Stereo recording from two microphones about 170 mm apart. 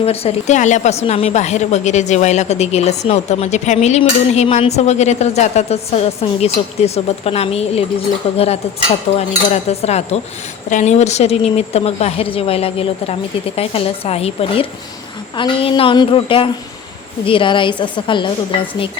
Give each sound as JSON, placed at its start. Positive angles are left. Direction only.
{"t": 0.0, "sound": "a woman's voice", "side_deg": 35}